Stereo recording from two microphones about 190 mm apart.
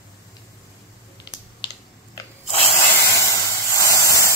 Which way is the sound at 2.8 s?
15° left (ahead or behind).